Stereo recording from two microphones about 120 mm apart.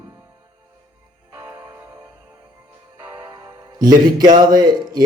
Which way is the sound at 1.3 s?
20° right (ahead or behind).